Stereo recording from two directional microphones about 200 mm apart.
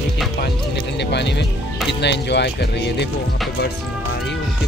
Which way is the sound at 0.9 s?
60° left (ahead or behind).